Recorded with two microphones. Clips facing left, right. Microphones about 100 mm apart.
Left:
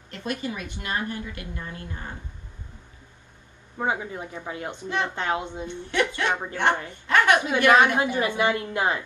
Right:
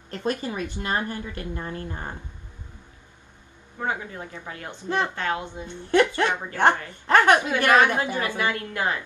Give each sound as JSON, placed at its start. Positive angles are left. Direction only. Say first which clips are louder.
{"t": 0.1, "sound": "a woman's voice", "louder": "right 3 dB", "side_deg": -35}
{"t": 3.8, "sound": "a woman's voice", "louder": "left 2 dB", "side_deg": 15}
{"t": 5.9, "sound": "a woman's voice", "louder": "right 5 dB", "side_deg": -40}
{"t": 7.5, "sound": "a woman's voice", "louder": "left 1 dB", "side_deg": 20}